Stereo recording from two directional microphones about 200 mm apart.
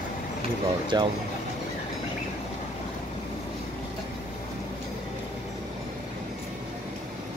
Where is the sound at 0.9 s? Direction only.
20° right (ahead or behind).